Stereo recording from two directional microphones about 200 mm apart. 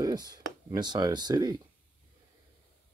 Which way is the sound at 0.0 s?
20° right (ahead or behind).